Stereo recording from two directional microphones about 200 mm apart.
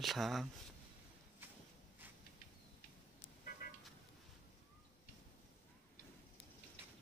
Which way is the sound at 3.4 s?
45° left (ahead or behind).